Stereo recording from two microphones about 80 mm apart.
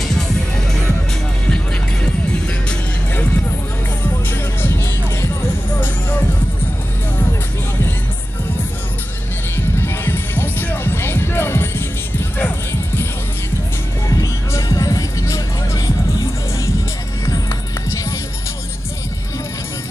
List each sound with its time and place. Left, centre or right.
4.3 s music: left
9.8 s music: left
14.0 s music: left
17.3 s music: left